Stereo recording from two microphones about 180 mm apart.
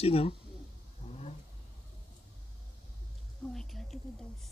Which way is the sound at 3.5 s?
Centre (ahead or behind).